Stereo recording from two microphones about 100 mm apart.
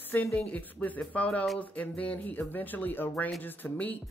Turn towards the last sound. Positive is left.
turn(degrees=15)  # may be behind; listen again after turning